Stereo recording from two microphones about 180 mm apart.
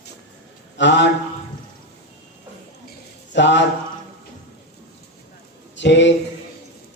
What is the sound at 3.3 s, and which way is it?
Mantra, 80° left.